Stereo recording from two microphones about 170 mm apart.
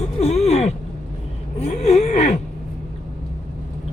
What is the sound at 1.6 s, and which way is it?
Gasp, 40° left (ahead or behind).